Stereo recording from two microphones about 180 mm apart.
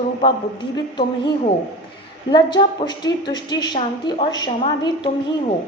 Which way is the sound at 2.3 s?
25° left (ahead or behind).